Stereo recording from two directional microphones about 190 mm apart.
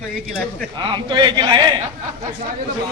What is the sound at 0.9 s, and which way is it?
Speech, 25° right (ahead or behind).